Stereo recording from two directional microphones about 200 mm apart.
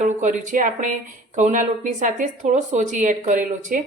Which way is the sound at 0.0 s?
40° right (ahead or behind).